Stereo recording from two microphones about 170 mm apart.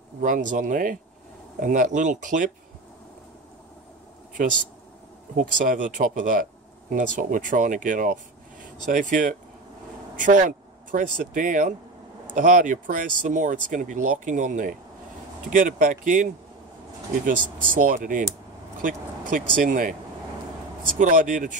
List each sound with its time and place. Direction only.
0.2 s speech: 50° right (ahead or behind)
5.3 s speech: 55° right (ahead or behind)
17.6 s speech: 50° right (ahead or behind)
21.0 s speech: 50° right (ahead or behind)